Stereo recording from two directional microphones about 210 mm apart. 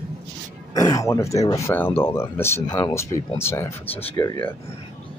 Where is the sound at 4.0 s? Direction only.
25° left (ahead or behind).